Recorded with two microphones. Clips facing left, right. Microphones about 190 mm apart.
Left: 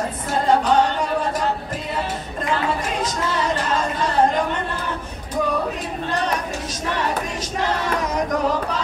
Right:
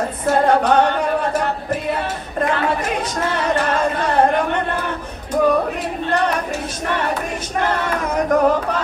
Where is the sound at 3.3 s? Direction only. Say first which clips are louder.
Right 5 dB; 60° right (ahead or behind).